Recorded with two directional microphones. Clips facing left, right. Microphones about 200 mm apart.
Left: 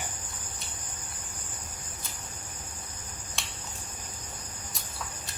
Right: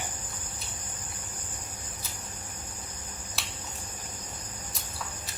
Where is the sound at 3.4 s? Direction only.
5° right (ahead or behind).